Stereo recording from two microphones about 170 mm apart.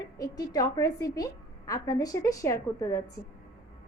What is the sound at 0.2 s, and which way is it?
A woman's voice, 20° left (ahead or behind).